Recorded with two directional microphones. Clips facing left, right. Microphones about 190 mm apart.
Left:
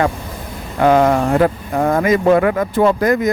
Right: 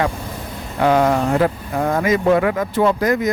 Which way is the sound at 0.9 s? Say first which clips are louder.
Left 3 dB; 50° left (ahead or behind).